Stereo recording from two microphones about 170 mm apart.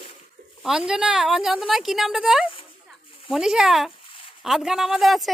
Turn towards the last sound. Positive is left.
turn(degrees=0)  # may be behind; listen again after turning